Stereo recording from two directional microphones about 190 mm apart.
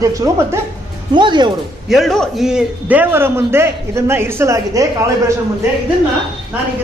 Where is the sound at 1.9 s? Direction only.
Centre (ahead or behind); by 4.9 s 15° right (ahead or behind).